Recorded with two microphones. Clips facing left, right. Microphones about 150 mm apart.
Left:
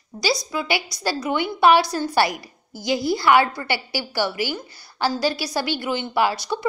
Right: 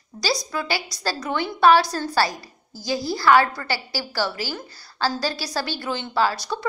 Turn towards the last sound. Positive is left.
turn(degrees=15)  # may be behind; listen again after turning